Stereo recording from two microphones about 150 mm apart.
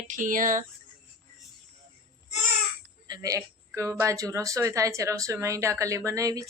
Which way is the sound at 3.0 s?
25° right (ahead or behind).